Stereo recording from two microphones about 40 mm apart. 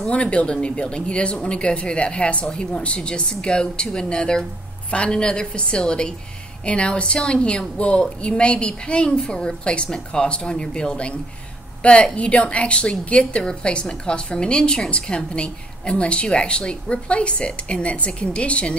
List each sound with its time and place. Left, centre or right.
0.0 s a woman's voice: left